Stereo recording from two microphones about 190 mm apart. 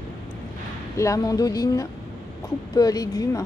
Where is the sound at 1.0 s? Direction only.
15° left (ahead or behind).